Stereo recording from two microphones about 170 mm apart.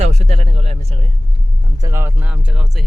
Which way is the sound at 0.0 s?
40° right (ahead or behind).